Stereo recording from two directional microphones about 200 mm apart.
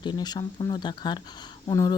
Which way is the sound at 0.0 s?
20° left (ahead or behind).